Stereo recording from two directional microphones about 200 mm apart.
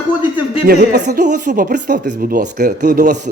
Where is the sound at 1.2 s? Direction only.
40° right (ahead or behind).